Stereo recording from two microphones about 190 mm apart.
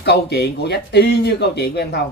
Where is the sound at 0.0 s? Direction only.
60° left (ahead or behind).